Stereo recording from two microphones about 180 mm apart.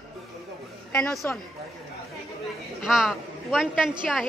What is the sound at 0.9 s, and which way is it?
Speech, 5° left (ahead or behind).